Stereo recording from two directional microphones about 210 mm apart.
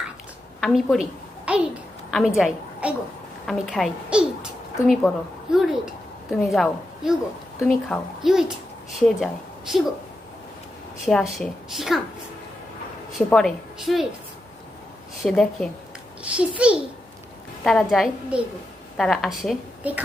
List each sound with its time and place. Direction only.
0.6 s speech: centre (ahead or behind)
1.5 s a sound: 5° right (ahead or behind)
2.0 s a woman's voice: centre (ahead or behind)
11.0 s speech: centre (ahead or behind)
13.1 s a woman's voice: centre (ahead or behind)
15.2 s a woman's voice: centre (ahead or behind)